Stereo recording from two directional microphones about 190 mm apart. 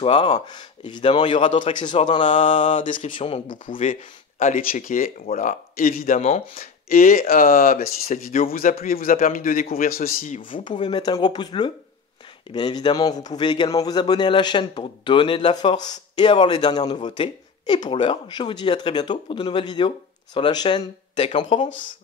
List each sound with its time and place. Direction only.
0.0 s a man's voice: 30° left (ahead or behind)
2.2 s mantra: 40° left (ahead or behind)
3.2 s mantra: 30° left (ahead or behind)
3.8 s speech: 40° left (ahead or behind)
6.6 s speech: 50° left (ahead or behind)
10.5 s a man's voice: 25° left (ahead or behind)